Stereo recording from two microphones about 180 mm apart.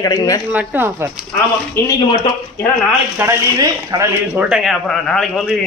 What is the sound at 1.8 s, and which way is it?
Speech, 15° left (ahead or behind).